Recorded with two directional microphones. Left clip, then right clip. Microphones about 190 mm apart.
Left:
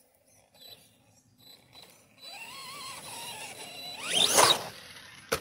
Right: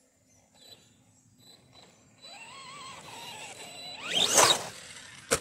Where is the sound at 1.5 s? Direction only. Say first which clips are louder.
Left 3 dB; 40° left (ahead or behind).